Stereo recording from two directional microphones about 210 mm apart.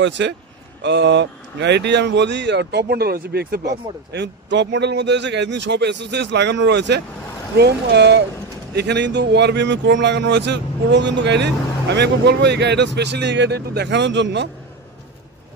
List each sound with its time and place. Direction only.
0.0 s speech: 55° right (ahead or behind)